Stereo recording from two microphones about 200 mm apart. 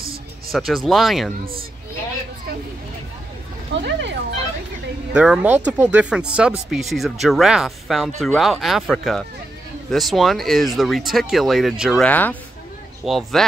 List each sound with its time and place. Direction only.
0.5 s speech: centre (ahead or behind)
3.7 s speech: 60° right (ahead or behind)
5.1 s speech: 5° right (ahead or behind)